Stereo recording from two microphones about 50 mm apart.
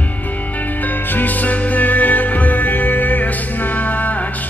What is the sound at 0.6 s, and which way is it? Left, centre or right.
Music, left.